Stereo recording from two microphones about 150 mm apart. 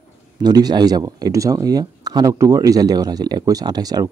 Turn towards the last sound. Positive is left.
turn(degrees=-25)  # may be behind; listen again after turning